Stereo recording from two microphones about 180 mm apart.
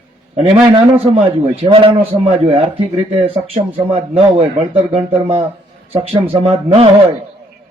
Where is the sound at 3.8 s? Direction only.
30° right (ahead or behind).